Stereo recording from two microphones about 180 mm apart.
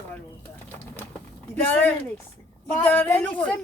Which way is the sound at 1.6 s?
10° left (ahead or behind).